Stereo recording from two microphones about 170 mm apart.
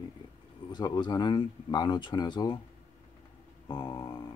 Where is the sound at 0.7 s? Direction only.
25° left (ahead or behind).